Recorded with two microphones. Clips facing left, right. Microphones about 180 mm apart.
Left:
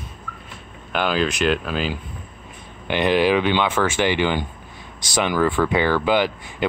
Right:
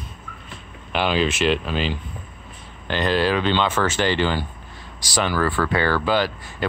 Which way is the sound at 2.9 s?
15° left (ahead or behind).